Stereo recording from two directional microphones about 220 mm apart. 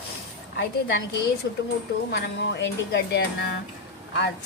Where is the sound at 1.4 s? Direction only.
50° left (ahead or behind).